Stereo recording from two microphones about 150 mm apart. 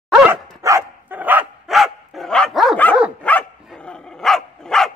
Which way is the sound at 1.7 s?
Centre (ahead or behind).